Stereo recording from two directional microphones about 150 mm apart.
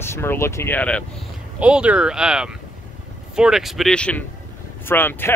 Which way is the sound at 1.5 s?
10° right (ahead or behind).